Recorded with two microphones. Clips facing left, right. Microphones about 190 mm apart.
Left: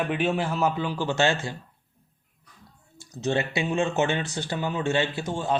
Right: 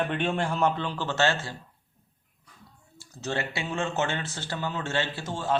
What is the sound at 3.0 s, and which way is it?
Speech, 20° left (ahead or behind).